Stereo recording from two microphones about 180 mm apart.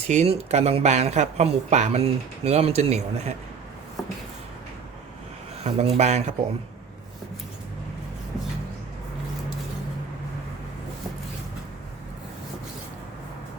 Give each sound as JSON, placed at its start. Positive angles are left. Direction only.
{"t": 0.1, "sound": "speech", "side_deg": -35}
{"t": 5.6, "sound": "speech", "side_deg": -35}